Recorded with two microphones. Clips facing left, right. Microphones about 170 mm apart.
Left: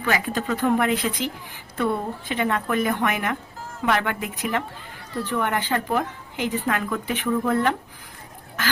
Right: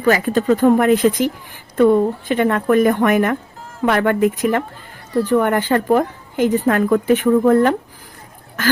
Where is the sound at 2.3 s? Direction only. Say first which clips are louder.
Right 8 dB; 50° right (ahead or behind).